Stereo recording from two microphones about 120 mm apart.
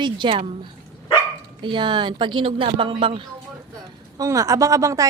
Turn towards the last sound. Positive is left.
turn(degrees=-25)  # may be behind; listen again after turning